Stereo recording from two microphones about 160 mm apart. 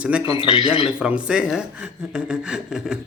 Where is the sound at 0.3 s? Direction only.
35° left (ahead or behind).